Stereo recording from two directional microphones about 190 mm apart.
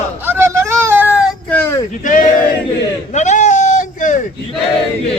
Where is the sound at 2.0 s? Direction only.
45° left (ahead or behind).